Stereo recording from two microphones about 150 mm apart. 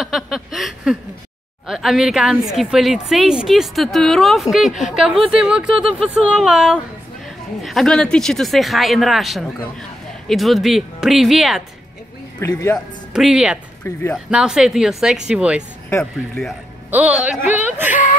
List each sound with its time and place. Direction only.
0.0 s a sound: centre (ahead or behind)
1.7 s a woman's voice: centre (ahead or behind)
12.4 s speech: 20° left (ahead or behind)
12.7 s a woman's voice: 5° right (ahead or behind)
16.9 s speech: 10° right (ahead or behind)